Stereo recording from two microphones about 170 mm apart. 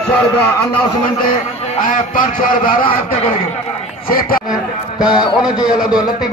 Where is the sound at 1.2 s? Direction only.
40° left (ahead or behind).